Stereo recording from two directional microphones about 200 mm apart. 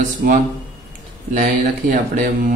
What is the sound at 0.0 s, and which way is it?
Speech, 40° right (ahead or behind).